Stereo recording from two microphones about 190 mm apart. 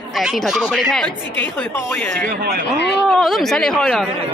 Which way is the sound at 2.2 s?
55° right (ahead or behind).